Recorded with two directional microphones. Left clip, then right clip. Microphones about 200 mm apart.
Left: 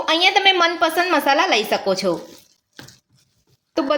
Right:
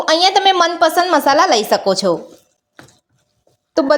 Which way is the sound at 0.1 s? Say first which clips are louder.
Right 3 dB; 35° right (ahead or behind).